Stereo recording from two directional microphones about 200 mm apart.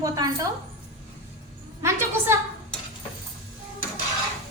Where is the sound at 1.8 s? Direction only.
10° right (ahead or behind).